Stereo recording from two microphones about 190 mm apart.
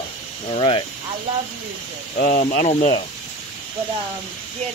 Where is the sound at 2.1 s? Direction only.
50° left (ahead or behind).